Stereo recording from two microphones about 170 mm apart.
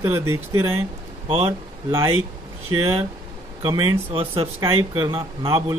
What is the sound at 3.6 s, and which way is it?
A man's voice, 30° right (ahead or behind).